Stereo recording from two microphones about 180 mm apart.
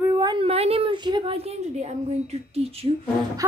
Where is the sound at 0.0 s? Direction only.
20° right (ahead or behind).